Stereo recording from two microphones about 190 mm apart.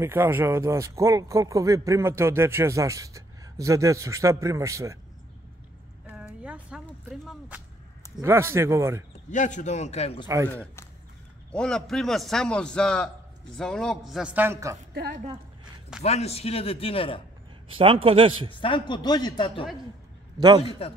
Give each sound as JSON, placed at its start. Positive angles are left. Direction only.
{"t": 0.0, "sound": "speech", "side_deg": -10}
{"t": 6.0, "sound": "a sound", "side_deg": -5}
{"t": 7.2, "sound": "speech", "side_deg": -10}
{"t": 9.3, "sound": "a man's voice", "side_deg": 40}
{"t": 10.2, "sound": "speech", "side_deg": -10}
{"t": 10.5, "sound": "a man's voice", "side_deg": 5}
{"t": 16.0, "sound": "a man's voice", "side_deg": 35}
{"t": 17.7, "sound": "a man's voice", "side_deg": -30}
{"t": 18.6, "sound": "speech", "side_deg": 25}
{"t": 20.3, "sound": "a man's voice", "side_deg": -20}